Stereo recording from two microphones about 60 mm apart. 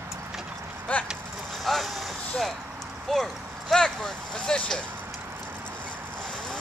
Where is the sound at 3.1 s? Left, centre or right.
Centre.